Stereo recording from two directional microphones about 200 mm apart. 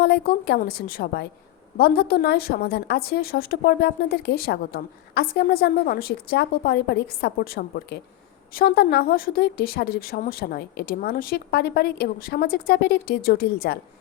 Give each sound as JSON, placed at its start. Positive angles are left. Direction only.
{"t": 0.0, "sound": "a woman's voice", "side_deg": 55}